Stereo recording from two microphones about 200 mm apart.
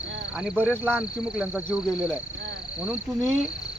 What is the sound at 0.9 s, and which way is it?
Speech, 5° right (ahead or behind).